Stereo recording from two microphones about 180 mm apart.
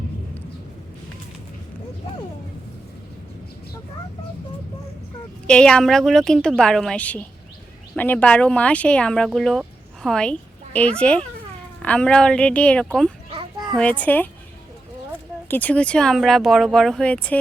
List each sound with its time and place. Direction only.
5.5 s speech: 5° left (ahead or behind)
13.3 s children playing: 25° right (ahead or behind)
13.7 s a child's voice: 5° left (ahead or behind)
15.4 s speech: 10° left (ahead or behind)